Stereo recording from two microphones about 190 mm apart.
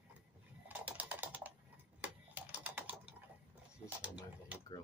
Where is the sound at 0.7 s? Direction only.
10° right (ahead or behind).